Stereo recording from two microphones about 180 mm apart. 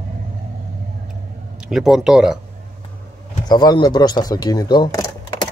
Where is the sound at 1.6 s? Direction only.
5° right (ahead or behind).